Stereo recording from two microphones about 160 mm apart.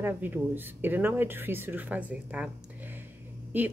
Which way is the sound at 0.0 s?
10° right (ahead or behind).